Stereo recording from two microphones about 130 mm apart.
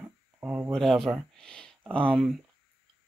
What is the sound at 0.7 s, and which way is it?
Speech, centre (ahead or behind).